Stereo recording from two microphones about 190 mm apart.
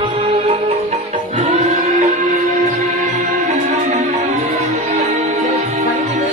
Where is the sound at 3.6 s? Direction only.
35° right (ahead or behind).